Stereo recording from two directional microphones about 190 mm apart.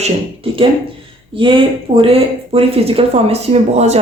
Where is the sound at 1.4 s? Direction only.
25° right (ahead or behind).